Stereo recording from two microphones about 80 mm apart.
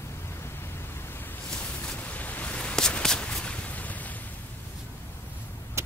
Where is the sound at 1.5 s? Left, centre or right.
Centre.